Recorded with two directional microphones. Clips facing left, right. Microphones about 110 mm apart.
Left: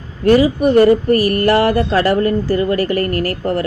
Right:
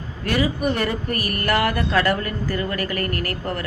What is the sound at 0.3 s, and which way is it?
Speech, 35° left (ahead or behind).